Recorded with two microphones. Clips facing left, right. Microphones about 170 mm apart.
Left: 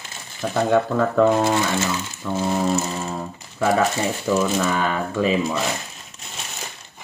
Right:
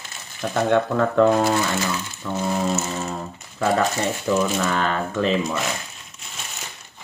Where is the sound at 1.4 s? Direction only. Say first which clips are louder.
Left 1 dB; 20° left (ahead or behind).